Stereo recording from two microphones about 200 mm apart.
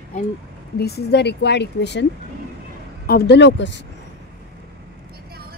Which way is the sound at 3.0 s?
55° left (ahead or behind).